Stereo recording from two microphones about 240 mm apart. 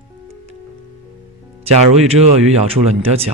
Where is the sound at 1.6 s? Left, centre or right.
Right.